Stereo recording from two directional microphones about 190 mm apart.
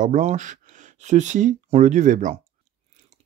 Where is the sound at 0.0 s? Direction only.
40° right (ahead or behind).